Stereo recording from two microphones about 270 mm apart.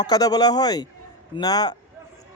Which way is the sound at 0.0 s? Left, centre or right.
Centre.